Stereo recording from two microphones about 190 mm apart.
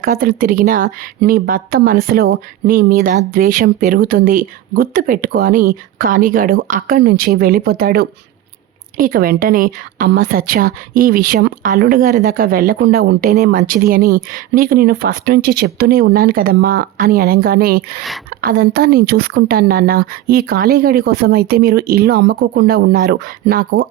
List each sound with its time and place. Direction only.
0.0 s speech: 50° right (ahead or behind)